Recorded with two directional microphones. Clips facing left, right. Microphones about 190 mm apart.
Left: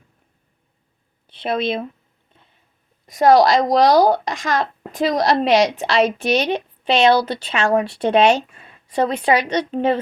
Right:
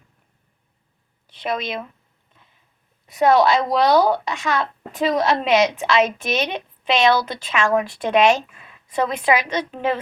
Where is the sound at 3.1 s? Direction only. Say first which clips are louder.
Left 3 dB; 40° left (ahead or behind).